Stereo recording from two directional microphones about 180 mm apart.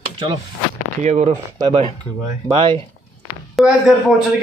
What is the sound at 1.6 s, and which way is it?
Speech, 25° right (ahead or behind).